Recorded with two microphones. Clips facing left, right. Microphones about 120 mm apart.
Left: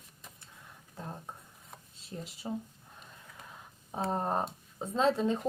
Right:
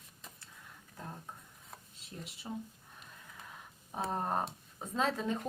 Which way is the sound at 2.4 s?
20° left (ahead or behind).